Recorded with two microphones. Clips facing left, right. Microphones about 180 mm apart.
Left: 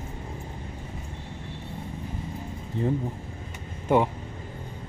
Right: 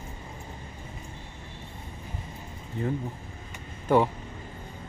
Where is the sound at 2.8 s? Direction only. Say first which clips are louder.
Left 3 dB; 30° left (ahead or behind).